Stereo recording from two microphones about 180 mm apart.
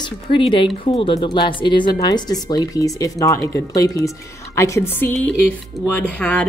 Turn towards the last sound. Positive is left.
turn(degrees=5)  # may be behind; listen again after turning